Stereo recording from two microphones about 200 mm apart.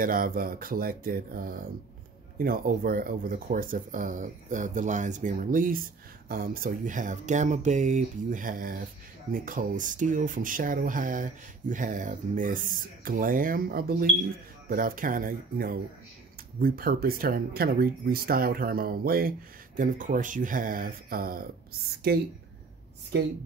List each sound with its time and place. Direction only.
0.0 s speech: 45° right (ahead or behind)